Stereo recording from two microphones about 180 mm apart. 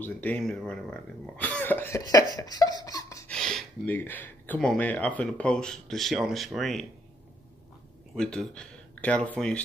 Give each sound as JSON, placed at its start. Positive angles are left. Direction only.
{"t": 0.0, "sound": "speech", "side_deg": 10}
{"t": 2.3, "sound": "a sound", "side_deg": 20}
{"t": 3.3, "sound": "speech", "side_deg": 0}
{"t": 8.1, "sound": "speech", "side_deg": 5}